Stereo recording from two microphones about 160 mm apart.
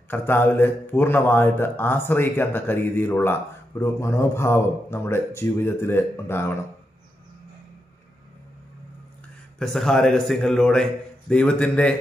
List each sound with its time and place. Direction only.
0.1 s a man's voice: 15° left (ahead or behind)
9.6 s a man's voice: centre (ahead or behind)